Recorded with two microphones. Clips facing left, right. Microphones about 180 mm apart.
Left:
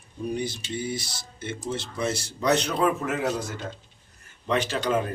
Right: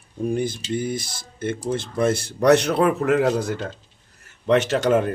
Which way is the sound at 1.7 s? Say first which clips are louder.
Right 8 dB; 50° right (ahead or behind).